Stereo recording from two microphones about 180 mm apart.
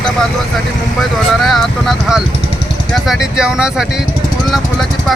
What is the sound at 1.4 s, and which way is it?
Speech, centre (ahead or behind).